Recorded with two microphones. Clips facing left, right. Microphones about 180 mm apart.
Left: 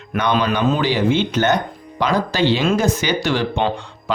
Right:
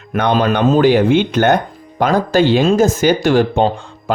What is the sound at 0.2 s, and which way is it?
Speech, 55° right (ahead or behind).